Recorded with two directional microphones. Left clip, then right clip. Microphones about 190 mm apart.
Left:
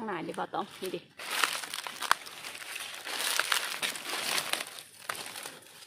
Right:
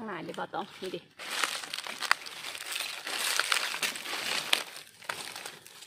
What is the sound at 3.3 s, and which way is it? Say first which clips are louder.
Crumpling: right 1 dB; 5° right (ahead or behind).